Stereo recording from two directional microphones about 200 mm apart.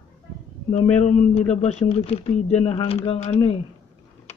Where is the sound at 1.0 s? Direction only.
35° left (ahead or behind).